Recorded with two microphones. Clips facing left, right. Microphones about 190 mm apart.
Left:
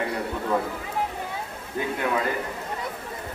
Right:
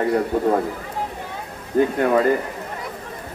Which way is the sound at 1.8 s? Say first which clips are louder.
Right 9 dB; 50° right (ahead or behind).